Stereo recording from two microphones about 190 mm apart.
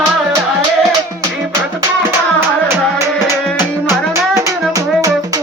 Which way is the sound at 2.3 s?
15° right (ahead or behind).